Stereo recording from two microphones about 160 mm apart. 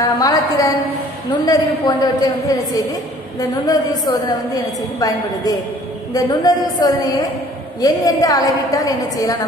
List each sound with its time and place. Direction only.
0.2 s a woman's voice: 20° left (ahead or behind)